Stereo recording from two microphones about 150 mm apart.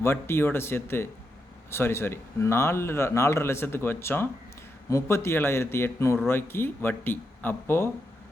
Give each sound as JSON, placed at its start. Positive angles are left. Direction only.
{"t": 0.0, "sound": "speech", "side_deg": 15}